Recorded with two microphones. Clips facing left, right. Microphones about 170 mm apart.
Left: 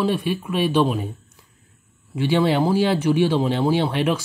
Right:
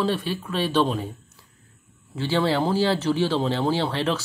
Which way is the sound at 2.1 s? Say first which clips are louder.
Left 4 dB; 15° left (ahead or behind).